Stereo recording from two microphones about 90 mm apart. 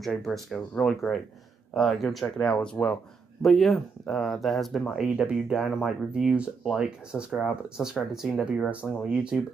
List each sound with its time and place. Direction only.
0.0 s speech: centre (ahead or behind)